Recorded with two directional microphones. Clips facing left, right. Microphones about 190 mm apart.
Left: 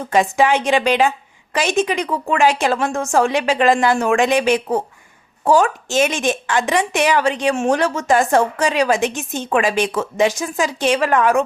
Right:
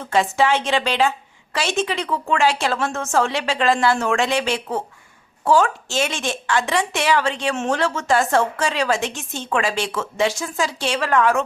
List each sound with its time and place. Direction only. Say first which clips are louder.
0.0 s a woman's voice: left 3 dB; 15° left (ahead or behind)